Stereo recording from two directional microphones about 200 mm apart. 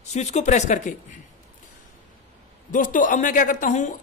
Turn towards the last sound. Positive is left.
turn(degrees=40)  # may be behind; listen again after turning